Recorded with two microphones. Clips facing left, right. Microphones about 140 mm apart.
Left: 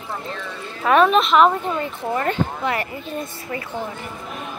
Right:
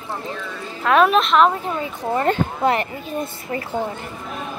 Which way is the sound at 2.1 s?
30° right (ahead or behind).